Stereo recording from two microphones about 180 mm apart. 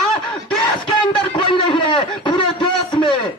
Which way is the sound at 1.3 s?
25° left (ahead or behind).